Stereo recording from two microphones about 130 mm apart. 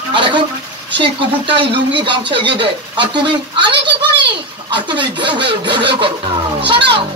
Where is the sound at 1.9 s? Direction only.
40° right (ahead or behind).